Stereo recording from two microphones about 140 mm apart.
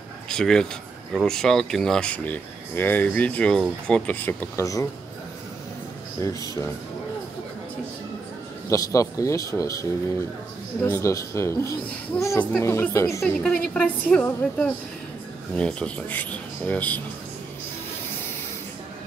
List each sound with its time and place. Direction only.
0.3 s speech: 5° left (ahead or behind); by 4.8 s 20° left (ahead or behind)
6.2 s speech: 25° left (ahead or behind)
8.6 s speech: 25° left (ahead or behind)